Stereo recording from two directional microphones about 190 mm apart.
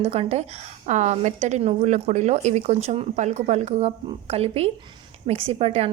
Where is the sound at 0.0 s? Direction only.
35° right (ahead or behind).